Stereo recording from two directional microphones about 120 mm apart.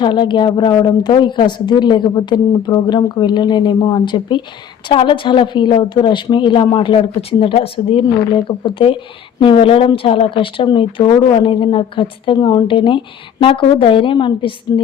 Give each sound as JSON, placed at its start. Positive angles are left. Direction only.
{"t": 0.0, "sound": "a woman's voice", "side_deg": 40}